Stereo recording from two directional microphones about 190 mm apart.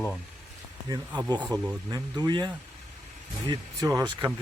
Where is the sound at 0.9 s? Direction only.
25° right (ahead or behind).